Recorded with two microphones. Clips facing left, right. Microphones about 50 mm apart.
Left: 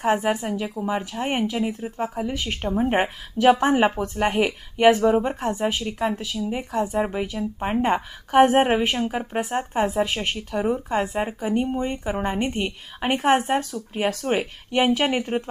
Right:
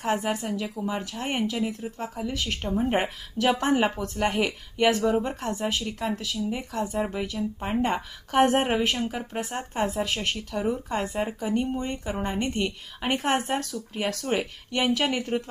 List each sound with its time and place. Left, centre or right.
0.0 s speech: left